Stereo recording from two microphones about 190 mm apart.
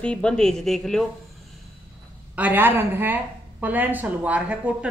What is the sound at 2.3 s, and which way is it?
Speech, 10° right (ahead or behind).